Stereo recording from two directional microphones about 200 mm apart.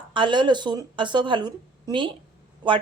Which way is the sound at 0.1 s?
25° right (ahead or behind).